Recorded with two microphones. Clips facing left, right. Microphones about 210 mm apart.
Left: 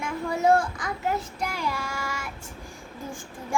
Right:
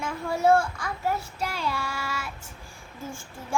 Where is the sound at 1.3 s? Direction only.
15° left (ahead or behind).